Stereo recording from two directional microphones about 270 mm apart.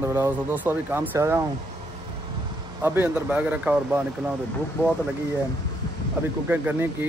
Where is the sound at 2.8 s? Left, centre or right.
Centre.